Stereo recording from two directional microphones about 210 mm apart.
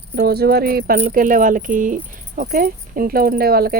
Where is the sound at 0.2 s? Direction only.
50° right (ahead or behind).